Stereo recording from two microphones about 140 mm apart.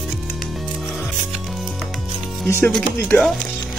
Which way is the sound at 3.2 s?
5° left (ahead or behind).